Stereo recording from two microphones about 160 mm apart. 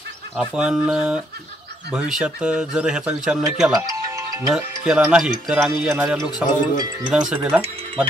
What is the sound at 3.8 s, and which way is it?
Music, 20° right (ahead or behind).